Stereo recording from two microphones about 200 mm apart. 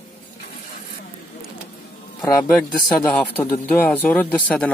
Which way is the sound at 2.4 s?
15° left (ahead or behind).